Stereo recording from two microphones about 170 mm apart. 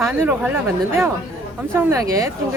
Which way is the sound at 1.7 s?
15° right (ahead or behind).